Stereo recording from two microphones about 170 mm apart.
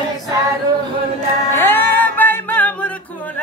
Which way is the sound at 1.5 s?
15° left (ahead or behind).